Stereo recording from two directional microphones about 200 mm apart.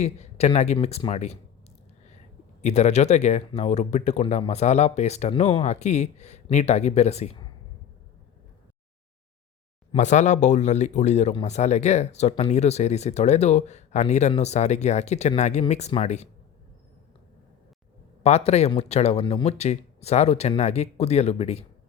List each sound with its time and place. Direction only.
0.0 s speech: 35° left (ahead or behind)
2.6 s speech: 35° left (ahead or behind)
9.9 s speech: 35° left (ahead or behind)
18.2 s a man's voice: 35° left (ahead or behind)